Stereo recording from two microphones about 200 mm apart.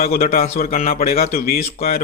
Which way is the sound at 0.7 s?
30° left (ahead or behind).